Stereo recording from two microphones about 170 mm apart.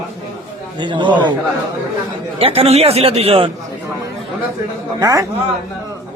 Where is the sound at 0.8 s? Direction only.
30° right (ahead or behind).